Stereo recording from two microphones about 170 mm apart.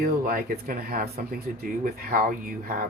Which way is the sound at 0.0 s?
55° right (ahead or behind).